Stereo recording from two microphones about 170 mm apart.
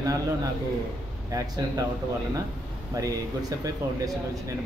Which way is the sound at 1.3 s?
20° right (ahead or behind).